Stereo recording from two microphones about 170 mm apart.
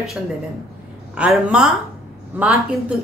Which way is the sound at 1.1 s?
5° right (ahead or behind).